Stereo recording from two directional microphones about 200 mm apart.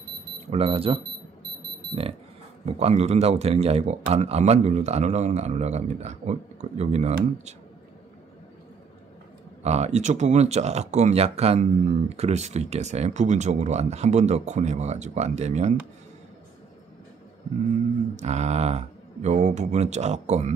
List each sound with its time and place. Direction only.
0.5 s speech: 30° right (ahead or behind)
2.6 s speech: 35° right (ahead or behind)
9.6 s speech: 35° right (ahead or behind)
18.1 s speech: 35° right (ahead or behind)